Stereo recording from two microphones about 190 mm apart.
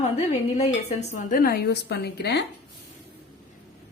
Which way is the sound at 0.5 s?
35° left (ahead or behind).